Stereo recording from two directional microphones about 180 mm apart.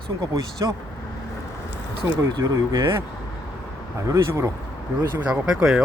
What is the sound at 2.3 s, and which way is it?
Speech, 20° right (ahead or behind).